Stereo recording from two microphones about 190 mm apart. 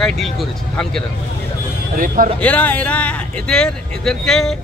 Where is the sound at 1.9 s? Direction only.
45° right (ahead or behind).